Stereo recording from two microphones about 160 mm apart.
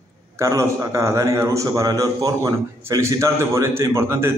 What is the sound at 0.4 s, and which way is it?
A man's voice, 20° right (ahead or behind).